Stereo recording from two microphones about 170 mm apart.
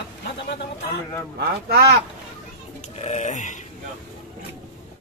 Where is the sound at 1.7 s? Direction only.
70° right (ahead or behind).